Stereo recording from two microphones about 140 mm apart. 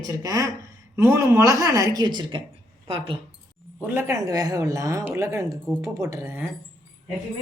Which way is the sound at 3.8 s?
15° right (ahead or behind).